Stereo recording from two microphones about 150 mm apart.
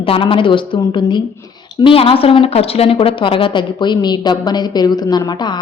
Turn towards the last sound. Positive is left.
turn(degrees=30)  # may be behind; listen again after turning